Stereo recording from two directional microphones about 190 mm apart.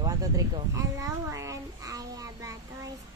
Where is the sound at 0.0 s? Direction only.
20° right (ahead or behind).